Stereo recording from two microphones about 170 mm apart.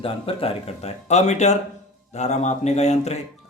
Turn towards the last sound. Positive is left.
turn(degrees=40)  # may be behind; listen again after turning